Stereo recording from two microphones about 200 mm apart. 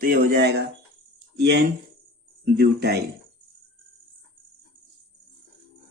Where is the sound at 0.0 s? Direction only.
50° right (ahead or behind).